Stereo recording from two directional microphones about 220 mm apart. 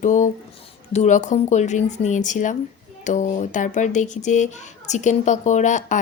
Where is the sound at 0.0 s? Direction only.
35° left (ahead or behind).